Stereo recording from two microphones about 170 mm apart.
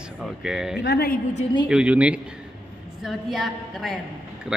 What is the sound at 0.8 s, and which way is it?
Speech, 70° left (ahead or behind).